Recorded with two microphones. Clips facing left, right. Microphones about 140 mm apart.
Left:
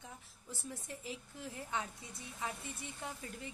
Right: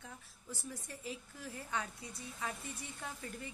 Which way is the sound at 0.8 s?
20° left (ahead or behind).